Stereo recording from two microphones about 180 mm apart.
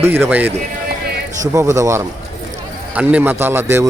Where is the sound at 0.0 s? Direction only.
10° right (ahead or behind).